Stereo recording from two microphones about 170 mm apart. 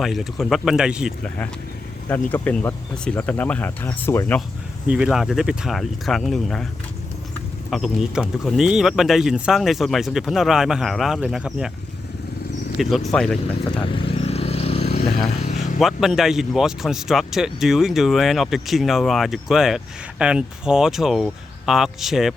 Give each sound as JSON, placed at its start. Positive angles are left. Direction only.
{"t": 0.0, "sound": "speech", "side_deg": 0}
{"t": 2.3, "sound": "speech", "side_deg": 10}
{"t": 4.9, "sound": "speech", "side_deg": -5}
{"t": 7.7, "sound": "speech", "side_deg": 0}
{"t": 12.8, "sound": "speech", "side_deg": 0}
{"t": 13.8, "sound": "vehicle", "side_deg": 30}
{"t": 15.4, "sound": "a sound", "side_deg": 45}
{"t": 15.8, "sound": "speech", "side_deg": 0}